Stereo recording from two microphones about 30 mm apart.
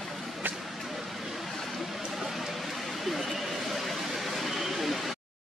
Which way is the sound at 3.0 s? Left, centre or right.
Centre.